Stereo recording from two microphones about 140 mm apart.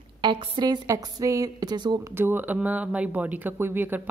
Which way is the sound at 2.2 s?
15° right (ahead or behind).